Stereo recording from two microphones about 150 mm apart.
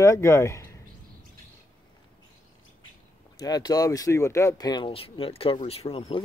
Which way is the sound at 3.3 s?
25° left (ahead or behind).